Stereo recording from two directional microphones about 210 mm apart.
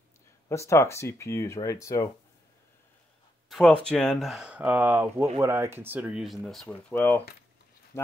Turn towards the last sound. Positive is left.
turn(degrees=10)  # may be behind; listen again after turning